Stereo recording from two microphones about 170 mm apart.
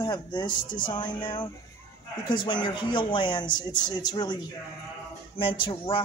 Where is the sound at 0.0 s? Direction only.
25° left (ahead or behind).